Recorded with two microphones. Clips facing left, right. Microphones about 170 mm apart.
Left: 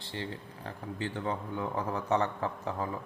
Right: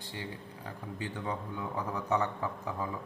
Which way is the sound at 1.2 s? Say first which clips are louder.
Left 3 dB; 30° left (ahead or behind).